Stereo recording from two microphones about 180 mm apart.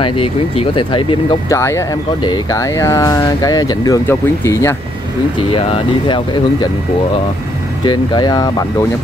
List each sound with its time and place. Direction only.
0.0 s speech: 30° left (ahead or behind)
1.5 s speech: 15° left (ahead or behind)
5.5 s speech: 30° left (ahead or behind)
7.8 s speech: 25° left (ahead or behind)